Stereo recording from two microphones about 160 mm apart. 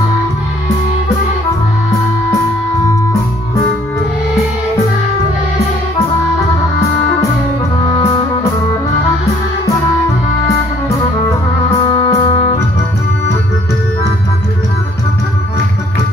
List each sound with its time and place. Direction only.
11.9 s music: 25° left (ahead or behind)